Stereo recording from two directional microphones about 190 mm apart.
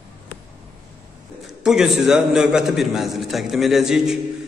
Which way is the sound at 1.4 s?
Centre (ahead or behind).